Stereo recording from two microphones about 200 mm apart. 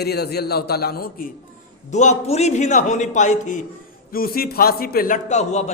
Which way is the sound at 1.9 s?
35° left (ahead or behind).